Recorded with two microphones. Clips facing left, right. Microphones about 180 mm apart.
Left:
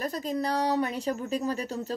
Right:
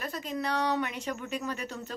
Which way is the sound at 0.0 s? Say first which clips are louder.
Left 4 dB; 35° left (ahead or behind).